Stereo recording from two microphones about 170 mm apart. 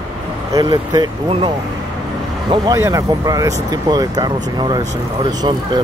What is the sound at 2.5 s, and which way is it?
Speech, 20° right (ahead or behind).